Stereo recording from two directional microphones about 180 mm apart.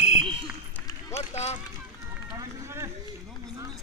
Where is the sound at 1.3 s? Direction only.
40° left (ahead or behind).